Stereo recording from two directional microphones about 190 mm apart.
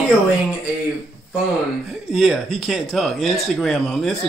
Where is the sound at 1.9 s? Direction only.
Centre (ahead or behind).